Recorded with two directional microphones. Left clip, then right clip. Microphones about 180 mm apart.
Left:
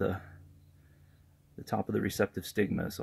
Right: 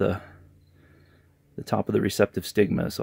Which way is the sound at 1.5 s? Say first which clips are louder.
Right 8 dB; 45° right (ahead or behind).